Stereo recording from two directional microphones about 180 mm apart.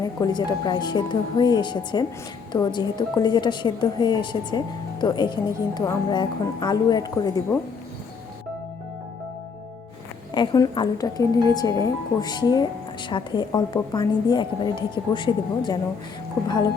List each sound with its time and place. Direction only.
0.0 s a woman's voice: 25° left (ahead or behind)
10.3 s a woman's voice: 25° left (ahead or behind)